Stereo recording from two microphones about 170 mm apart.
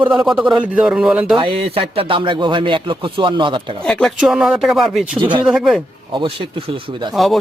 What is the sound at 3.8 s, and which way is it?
A man's voice, 5° left (ahead or behind).